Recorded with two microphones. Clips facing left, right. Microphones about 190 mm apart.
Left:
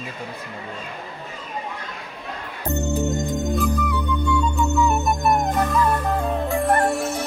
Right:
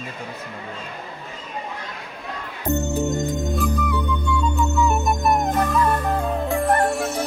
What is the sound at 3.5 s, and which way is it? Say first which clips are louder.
Music: left 1 dB; centre (ahead or behind).